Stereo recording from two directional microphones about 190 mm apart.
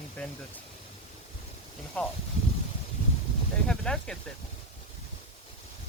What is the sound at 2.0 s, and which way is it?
Speech, 10° left (ahead or behind).